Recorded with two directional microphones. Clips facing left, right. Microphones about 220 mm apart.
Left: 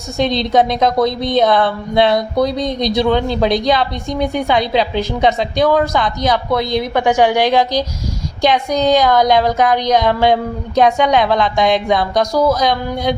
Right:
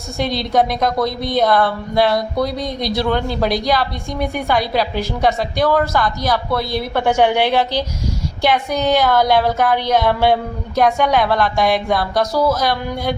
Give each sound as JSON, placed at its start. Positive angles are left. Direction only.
{"t": 0.2, "sound": "a woman's voice", "side_deg": 20}